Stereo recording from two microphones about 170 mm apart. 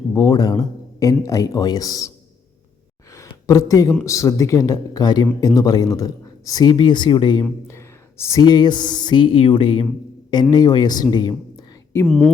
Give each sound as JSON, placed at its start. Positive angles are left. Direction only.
{"t": 0.1, "sound": "speech", "side_deg": 20}
{"t": 3.1, "sound": "a sound", "side_deg": 20}
{"t": 4.0, "sound": "speech", "side_deg": 20}
{"t": 7.4, "sound": "speech", "side_deg": 15}
{"t": 12.0, "sound": "speech", "side_deg": 0}